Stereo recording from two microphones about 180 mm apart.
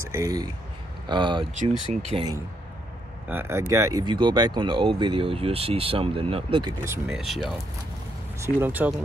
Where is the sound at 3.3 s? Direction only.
15° right (ahead or behind); by 6.7 s 30° right (ahead or behind).